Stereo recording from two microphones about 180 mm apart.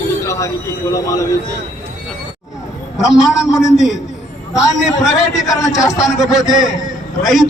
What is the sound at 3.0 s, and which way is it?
Speech, centre (ahead or behind).